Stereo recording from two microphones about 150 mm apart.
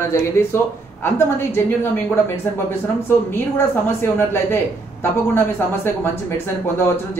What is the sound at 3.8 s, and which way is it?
Speech, 15° left (ahead or behind).